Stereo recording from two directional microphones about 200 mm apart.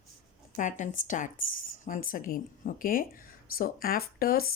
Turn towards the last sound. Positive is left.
turn(degrees=50)  # may be behind; listen again after turning